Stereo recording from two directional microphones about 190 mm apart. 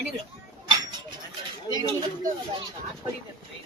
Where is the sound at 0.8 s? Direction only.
25° right (ahead or behind).